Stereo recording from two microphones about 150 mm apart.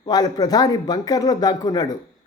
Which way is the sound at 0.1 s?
25° left (ahead or behind).